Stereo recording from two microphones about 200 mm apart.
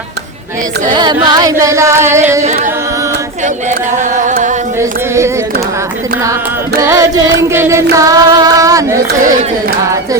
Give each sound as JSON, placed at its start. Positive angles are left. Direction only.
{"t": 0.9, "sound": "music", "side_deg": -20}
{"t": 4.8, "sound": "a sound", "side_deg": -15}
{"t": 6.7, "sound": "music", "side_deg": -15}